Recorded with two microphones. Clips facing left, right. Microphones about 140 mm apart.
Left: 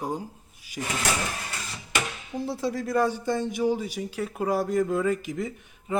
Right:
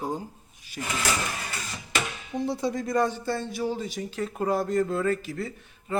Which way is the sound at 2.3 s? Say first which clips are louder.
Right 1 dB; centre (ahead or behind).